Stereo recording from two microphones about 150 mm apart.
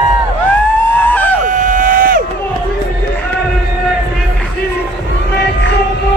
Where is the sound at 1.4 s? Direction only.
60° right (ahead or behind).